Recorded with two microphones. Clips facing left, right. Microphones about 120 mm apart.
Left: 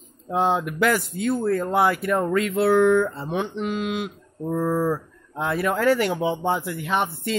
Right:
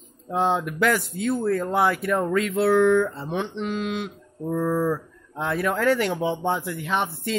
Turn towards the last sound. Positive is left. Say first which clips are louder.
# left 1 dB
turn(degrees=0)  # may be behind; listen again after turning